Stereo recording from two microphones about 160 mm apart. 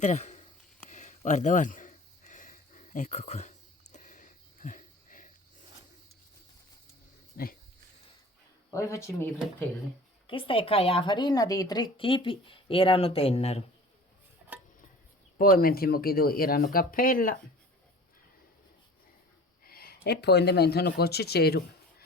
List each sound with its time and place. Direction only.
0.0 s a sound: 50° left (ahead or behind)
7.3 s speech: 70° left (ahead or behind)
8.7 s speech: 20° left (ahead or behind)
10.2 s speech: 35° left (ahead or behind)
15.4 s speech: 65° left (ahead or behind)
19.6 s speech: 70° left (ahead or behind); by 21.6 s 90° left